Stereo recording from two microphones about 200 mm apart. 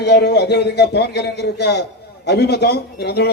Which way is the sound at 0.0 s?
55° left (ahead or behind).